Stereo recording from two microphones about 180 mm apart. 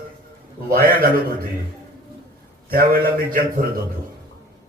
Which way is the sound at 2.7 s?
55° right (ahead or behind).